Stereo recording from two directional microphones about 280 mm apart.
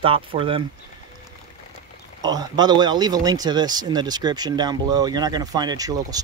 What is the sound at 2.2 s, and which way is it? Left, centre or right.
Speech, centre.